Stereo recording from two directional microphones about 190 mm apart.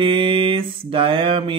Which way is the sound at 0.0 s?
25° right (ahead or behind).